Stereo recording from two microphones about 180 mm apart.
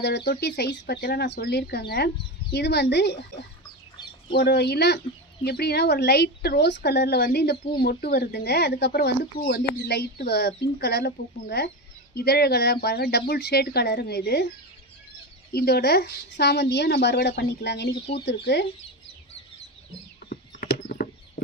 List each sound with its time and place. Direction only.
0.0 s speech: 65° left (ahead or behind)
15.5 s speech: 60° left (ahead or behind)
20.2 s horse: 55° left (ahead or behind)